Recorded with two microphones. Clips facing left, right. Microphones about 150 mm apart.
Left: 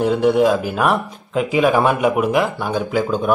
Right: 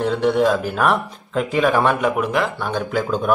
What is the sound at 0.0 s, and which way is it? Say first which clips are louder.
A man's voice: left 3 dB; 5° left (ahead or behind).